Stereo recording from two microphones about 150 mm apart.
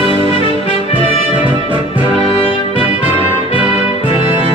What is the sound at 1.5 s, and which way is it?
Music, 35° right (ahead or behind).